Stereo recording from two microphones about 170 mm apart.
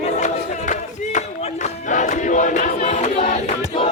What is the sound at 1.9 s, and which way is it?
Battle cry, 45° left (ahead or behind).